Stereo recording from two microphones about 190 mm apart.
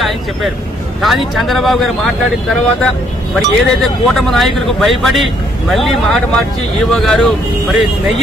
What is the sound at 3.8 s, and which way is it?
Speech, centre (ahead or behind).